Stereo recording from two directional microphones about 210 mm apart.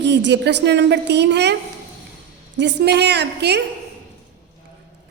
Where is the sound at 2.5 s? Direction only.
55° right (ahead or behind).